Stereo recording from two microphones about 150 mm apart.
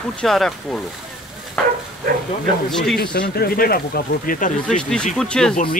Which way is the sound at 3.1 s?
90° left.